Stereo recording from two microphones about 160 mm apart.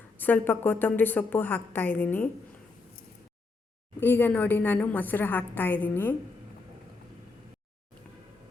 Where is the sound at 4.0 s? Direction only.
15° left (ahead or behind).